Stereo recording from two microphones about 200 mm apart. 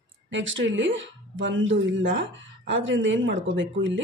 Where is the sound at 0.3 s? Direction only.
65° right (ahead or behind).